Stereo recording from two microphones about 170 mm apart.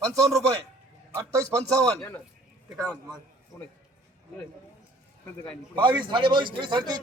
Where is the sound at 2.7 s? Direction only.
20° right (ahead or behind).